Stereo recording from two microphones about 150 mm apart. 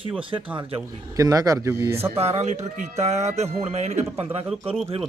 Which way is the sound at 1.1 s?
25° right (ahead or behind).